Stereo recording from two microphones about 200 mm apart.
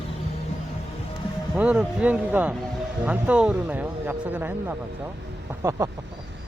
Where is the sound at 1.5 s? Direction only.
5° right (ahead or behind).